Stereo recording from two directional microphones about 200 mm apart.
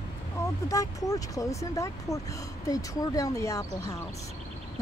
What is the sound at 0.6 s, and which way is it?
Speech, 15° left (ahead or behind).